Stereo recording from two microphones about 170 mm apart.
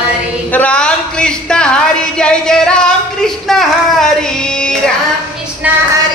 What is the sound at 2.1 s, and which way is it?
Music, 5° left (ahead or behind).